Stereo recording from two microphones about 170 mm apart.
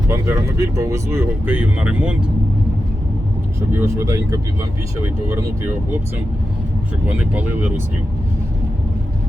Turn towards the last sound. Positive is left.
turn(degrees=-10)  # may be behind; listen again after turning